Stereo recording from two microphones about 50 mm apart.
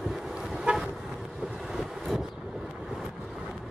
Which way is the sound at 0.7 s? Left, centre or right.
Right.